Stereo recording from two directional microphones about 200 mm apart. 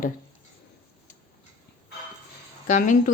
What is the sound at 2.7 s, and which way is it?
Speech, 40° left (ahead or behind).